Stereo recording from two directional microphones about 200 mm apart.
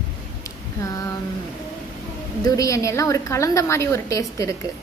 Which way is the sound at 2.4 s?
15° left (ahead or behind).